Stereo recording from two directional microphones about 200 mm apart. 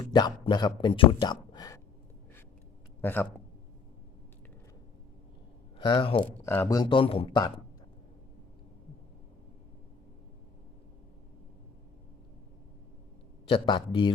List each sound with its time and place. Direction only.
0.0 s speech: 20° left (ahead or behind)
3.0 s speech: 10° left (ahead or behind)
5.8 s speech: 25° left (ahead or behind)
6.4 s speech: 10° left (ahead or behind)
13.5 s speech: 25° left (ahead or behind)